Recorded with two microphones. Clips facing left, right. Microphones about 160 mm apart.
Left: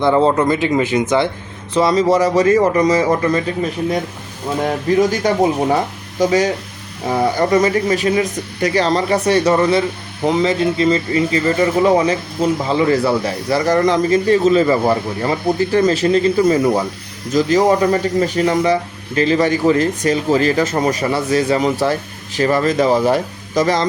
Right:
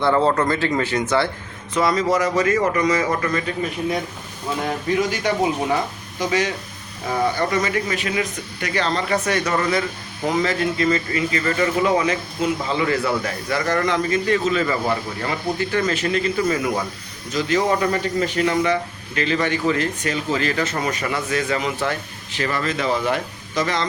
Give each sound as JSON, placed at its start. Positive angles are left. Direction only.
{"t": 0.0, "sound": "speech", "side_deg": 20}
{"t": 1.7, "sound": "speech", "side_deg": 30}
{"t": 5.2, "sound": "speech", "side_deg": 40}